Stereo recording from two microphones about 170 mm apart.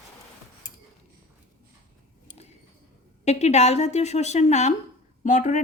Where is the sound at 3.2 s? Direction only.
40° left (ahead or behind).